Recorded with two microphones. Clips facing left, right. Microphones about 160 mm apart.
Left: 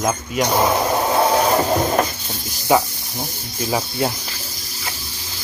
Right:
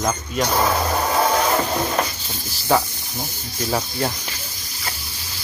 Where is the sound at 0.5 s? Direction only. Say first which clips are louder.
Left 3 dB; 20° left (ahead or behind).